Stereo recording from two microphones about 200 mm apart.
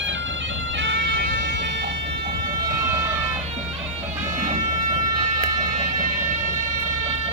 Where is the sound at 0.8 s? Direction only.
65° right (ahead or behind).